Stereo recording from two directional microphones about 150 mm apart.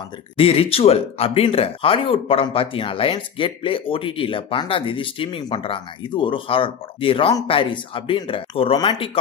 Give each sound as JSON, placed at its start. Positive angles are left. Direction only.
{"t": 0.4, "sound": "speech", "side_deg": 40}